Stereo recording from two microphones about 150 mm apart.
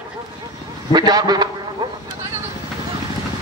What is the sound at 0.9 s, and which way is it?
Speech, 25° right (ahead or behind).